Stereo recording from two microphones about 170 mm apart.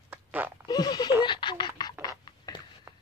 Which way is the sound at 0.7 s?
25° left (ahead or behind).